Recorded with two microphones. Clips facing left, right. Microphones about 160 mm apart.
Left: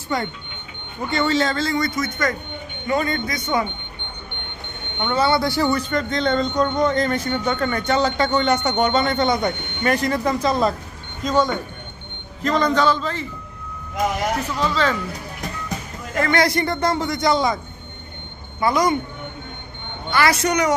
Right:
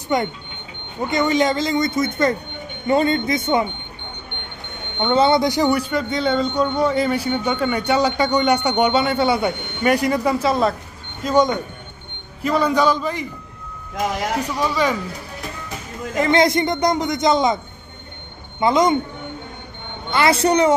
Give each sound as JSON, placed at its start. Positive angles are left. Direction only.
{"t": 0.1, "sound": "a man's voice", "side_deg": -20}
{"t": 5.0, "sound": "speech", "side_deg": -25}
{"t": 11.2, "sound": "speech", "side_deg": -15}
{"t": 14.4, "sound": "speech", "side_deg": -15}
{"t": 16.2, "sound": "a man's voice", "side_deg": -20}
{"t": 18.6, "sound": "a man's voice", "side_deg": -20}
{"t": 20.1, "sound": "a man's voice", "side_deg": -25}